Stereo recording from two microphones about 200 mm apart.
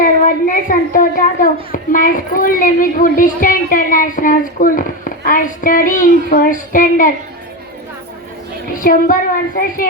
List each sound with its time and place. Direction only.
0.0 s a sound: 45° left (ahead or behind)
1.7 s a woman's voice: 45° left (ahead or behind)
8.7 s a woman's voice: 45° left (ahead or behind)